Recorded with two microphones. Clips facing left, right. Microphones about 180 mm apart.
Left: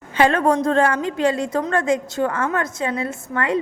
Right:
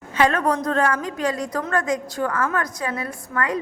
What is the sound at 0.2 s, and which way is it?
A woman's voice, 30° left (ahead or behind).